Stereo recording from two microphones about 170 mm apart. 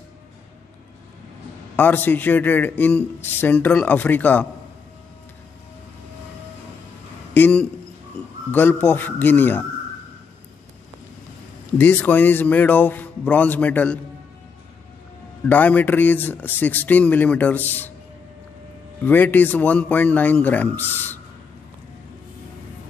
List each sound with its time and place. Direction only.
1.8 s a man's voice: 10° left (ahead or behind)
7.3 s a man's voice: 10° left (ahead or behind)
11.8 s a man's voice: 10° left (ahead or behind)
15.4 s a man's voice: 10° left (ahead or behind)
19.0 s a man's voice: 10° left (ahead or behind)